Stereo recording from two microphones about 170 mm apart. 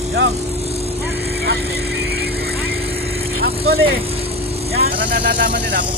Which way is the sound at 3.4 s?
70° right (ahead or behind).